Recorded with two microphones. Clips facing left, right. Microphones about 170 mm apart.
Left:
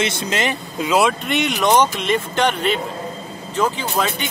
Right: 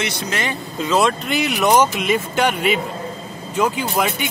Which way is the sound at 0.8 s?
10° left (ahead or behind).